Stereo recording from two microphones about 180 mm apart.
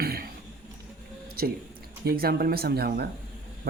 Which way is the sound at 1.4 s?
55° right (ahead or behind).